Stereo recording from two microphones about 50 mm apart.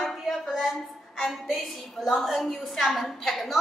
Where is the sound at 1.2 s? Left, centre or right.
Centre.